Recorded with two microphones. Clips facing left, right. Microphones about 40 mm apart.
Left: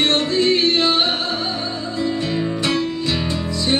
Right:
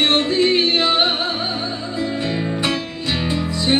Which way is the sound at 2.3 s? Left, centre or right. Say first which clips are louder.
Left 1 dB; centre.